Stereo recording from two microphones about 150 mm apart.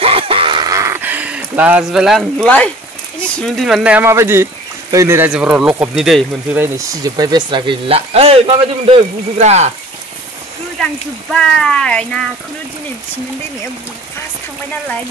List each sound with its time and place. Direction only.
0.0 s a sound: 40° right (ahead or behind); by 2.7 s 10° left (ahead or behind)
3.3 s speech: centre (ahead or behind)
7.0 s speech: 25° right (ahead or behind); by 9.7 s 45° right (ahead or behind)
11.3 s speech: 5° left (ahead or behind)